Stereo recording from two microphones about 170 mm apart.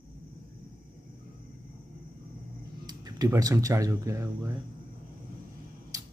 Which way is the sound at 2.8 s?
25° right (ahead or behind).